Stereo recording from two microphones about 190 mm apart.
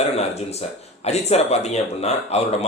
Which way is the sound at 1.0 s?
35° left (ahead or behind).